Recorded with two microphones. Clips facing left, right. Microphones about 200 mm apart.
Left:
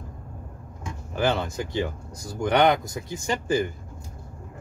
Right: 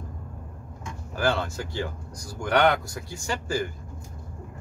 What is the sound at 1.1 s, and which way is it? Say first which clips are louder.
Speech: left 1 dB; 20° left (ahead or behind).